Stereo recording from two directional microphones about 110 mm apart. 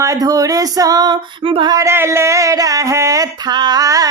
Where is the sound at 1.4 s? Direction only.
55° right (ahead or behind).